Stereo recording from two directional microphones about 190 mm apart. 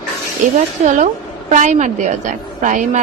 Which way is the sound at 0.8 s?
40° right (ahead or behind).